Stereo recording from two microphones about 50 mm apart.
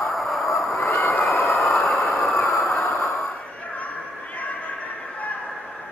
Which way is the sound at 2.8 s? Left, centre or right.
Left.